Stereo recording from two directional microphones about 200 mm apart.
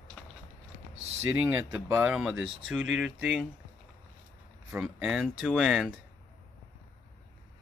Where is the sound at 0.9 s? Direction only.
30° right (ahead or behind).